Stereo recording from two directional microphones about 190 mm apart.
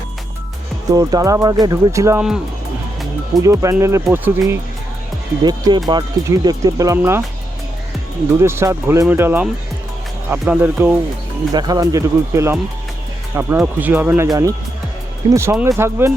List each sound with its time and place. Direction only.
0.9 s music: 20° right (ahead or behind)
3.4 s music: 15° right (ahead or behind)
5.4 s speech: 20° right (ahead or behind)
8.4 s music: 15° right (ahead or behind)